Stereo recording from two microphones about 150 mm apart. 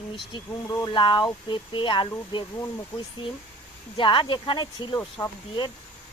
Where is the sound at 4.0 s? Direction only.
35° left (ahead or behind).